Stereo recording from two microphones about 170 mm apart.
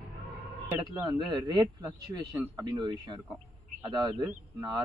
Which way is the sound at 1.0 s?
25° right (ahead or behind).